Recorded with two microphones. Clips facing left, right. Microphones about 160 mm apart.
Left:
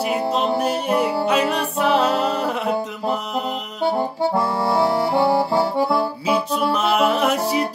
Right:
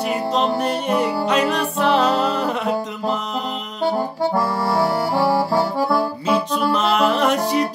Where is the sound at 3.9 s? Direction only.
25° left (ahead or behind).